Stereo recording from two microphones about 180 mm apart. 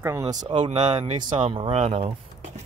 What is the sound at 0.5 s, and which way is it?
Speech, 30° right (ahead or behind).